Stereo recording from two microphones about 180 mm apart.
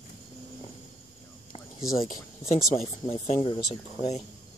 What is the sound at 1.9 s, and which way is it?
Speech, 50° left (ahead or behind).